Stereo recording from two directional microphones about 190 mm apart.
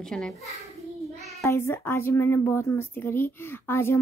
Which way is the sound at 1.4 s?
10° left (ahead or behind).